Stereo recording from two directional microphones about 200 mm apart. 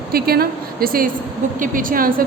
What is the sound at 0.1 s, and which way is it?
A woman's voice, 50° right (ahead or behind).